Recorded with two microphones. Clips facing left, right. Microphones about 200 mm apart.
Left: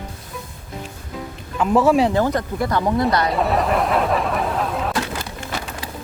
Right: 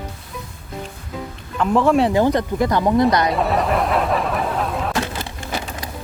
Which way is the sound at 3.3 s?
Centre (ahead or behind).